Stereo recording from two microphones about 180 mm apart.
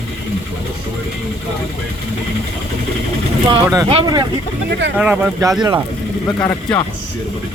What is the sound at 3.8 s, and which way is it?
Speech, 30° right (ahead or behind).